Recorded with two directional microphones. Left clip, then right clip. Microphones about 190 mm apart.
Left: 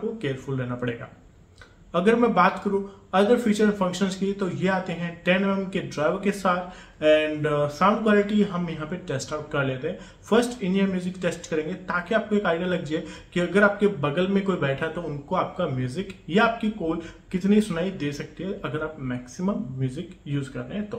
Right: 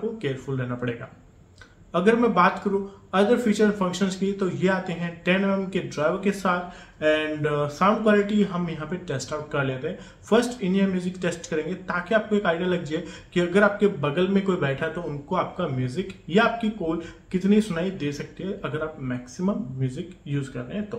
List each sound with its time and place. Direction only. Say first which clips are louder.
0.2 s a man's voice: even; 5° left (ahead or behind)